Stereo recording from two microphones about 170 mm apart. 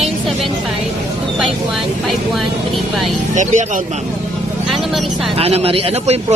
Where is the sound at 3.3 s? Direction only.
45° right (ahead or behind).